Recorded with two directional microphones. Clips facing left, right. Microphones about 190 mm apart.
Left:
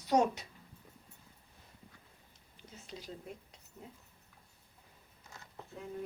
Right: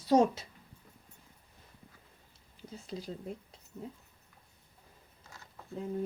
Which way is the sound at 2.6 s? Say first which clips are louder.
Right 7 dB; 35° right (ahead or behind).